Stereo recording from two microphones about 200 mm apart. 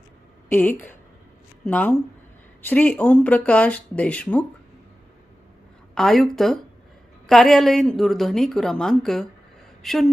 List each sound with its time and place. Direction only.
0.5 s speech: 10° left (ahead or behind)
5.9 s a woman's voice: centre (ahead or behind)